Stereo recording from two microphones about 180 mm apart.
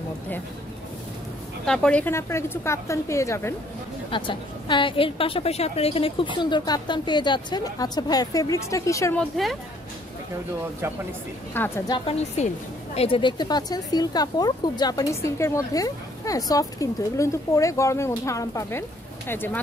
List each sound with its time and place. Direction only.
1.7 s a woman's voice: 5° left (ahead or behind)
4.1 s speech: 25° left (ahead or behind)
9.2 s a woman's voice: centre (ahead or behind)
11.6 s a woman's voice: 10° left (ahead or behind)
11.9 s a woman's voice: 35° left (ahead or behind); by 19.6 s 10° left (ahead or behind)